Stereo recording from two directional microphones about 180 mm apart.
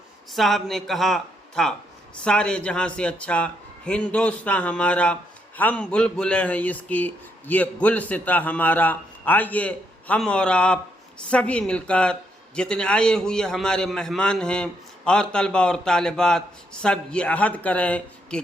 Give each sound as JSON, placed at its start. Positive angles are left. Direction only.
{"t": 0.3, "sound": "a man's voice", "side_deg": 0}